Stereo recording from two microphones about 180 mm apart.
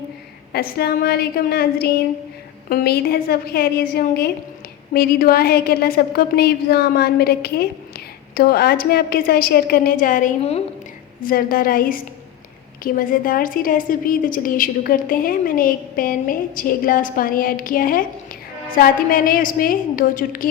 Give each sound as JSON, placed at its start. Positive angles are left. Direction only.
{"t": 0.5, "sound": "a woman's voice", "side_deg": 60}
{"t": 11.2, "sound": "a woman's voice", "side_deg": 55}